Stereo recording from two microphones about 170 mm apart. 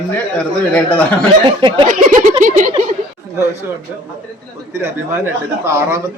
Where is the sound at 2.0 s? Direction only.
50° right (ahead or behind).